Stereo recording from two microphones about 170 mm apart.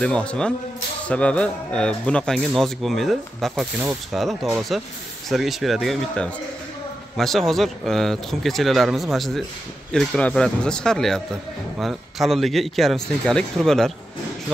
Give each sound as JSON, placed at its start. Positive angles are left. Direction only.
{"t": 0.0, "sound": "speech", "side_deg": 5}